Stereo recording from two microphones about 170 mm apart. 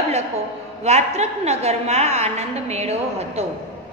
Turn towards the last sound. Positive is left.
turn(degrees=-35)  # may be behind; listen again after turning